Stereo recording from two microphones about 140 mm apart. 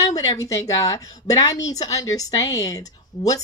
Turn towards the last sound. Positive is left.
turn(degrees=25)  # may be behind; listen again after turning